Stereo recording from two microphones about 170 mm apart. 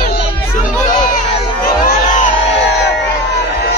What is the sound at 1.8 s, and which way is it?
Music, 50° left (ahead or behind).